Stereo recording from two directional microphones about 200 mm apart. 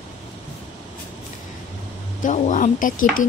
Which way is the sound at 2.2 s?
40° left (ahead or behind).